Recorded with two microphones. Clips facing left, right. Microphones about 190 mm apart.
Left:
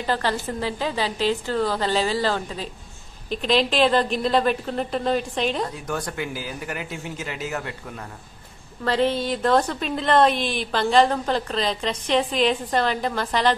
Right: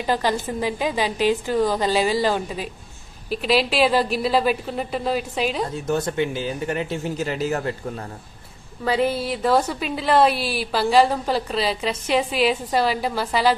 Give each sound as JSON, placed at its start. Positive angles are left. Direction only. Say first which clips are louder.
{"t": 0.0, "sound": "a woman's voice", "louder": "right 2 dB", "side_deg": -15}
{"t": 5.9, "sound": "a man's voice", "louder": "right 6 dB", "side_deg": -25}
{"t": 8.8, "sound": "a woman's voice", "louder": "even", "side_deg": -10}